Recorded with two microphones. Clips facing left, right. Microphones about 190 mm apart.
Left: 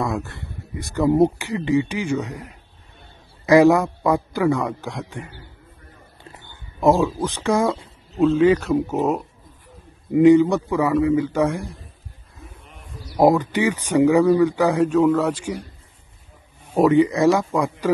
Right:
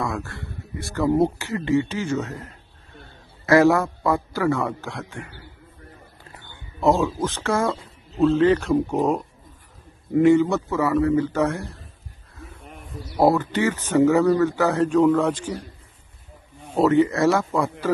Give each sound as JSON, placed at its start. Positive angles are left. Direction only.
{"t": 0.0, "sound": "speech", "side_deg": 20}
{"t": 13.2, "sound": "speech", "side_deg": 15}
{"t": 16.7, "sound": "speech", "side_deg": 15}